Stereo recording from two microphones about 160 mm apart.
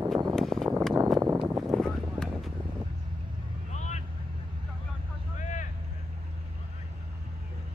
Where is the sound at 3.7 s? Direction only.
45° left (ahead or behind).